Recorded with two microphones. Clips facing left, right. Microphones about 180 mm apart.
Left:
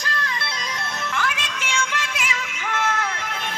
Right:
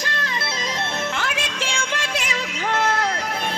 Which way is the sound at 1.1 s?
30° right (ahead or behind).